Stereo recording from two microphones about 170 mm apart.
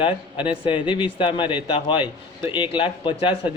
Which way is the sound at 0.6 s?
30° left (ahead or behind).